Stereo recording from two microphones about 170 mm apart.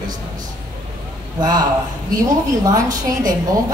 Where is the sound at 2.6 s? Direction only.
20° right (ahead or behind).